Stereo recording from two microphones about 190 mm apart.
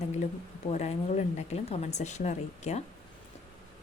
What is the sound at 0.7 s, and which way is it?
Speech, 35° left (ahead or behind).